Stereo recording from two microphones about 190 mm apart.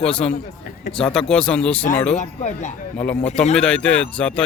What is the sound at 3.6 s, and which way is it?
Speech, 5° left (ahead or behind).